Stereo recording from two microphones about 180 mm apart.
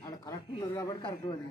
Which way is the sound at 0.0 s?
20° left (ahead or behind).